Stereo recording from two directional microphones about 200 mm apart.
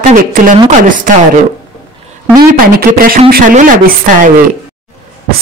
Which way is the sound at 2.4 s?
50° right (ahead or behind).